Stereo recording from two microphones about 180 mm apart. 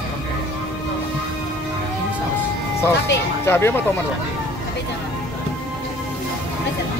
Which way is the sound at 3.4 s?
15° left (ahead or behind).